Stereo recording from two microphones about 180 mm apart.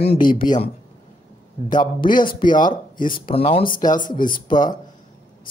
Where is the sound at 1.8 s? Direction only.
25° left (ahead or behind).